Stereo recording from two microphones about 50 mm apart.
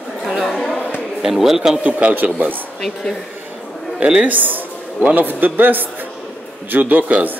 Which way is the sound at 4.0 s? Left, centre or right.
Right.